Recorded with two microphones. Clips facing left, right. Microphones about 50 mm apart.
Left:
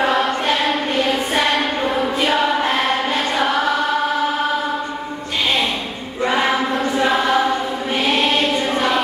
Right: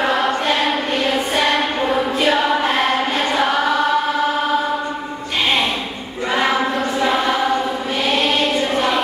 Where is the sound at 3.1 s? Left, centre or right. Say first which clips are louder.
Right 1 dB; centre.